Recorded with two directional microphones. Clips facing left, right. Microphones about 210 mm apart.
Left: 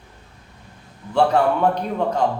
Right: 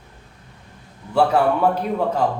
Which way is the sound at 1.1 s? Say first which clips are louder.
Even; 5° right (ahead or behind).